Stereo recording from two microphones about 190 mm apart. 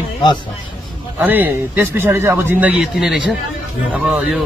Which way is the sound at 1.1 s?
10° right (ahead or behind).